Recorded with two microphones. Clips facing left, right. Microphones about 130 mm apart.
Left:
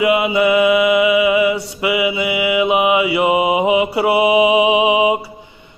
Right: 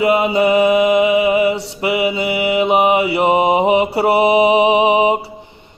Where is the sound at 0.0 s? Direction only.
35° right (ahead or behind).